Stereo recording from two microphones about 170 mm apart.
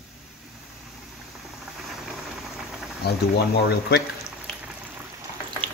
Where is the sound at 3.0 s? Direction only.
70° left (ahead or behind).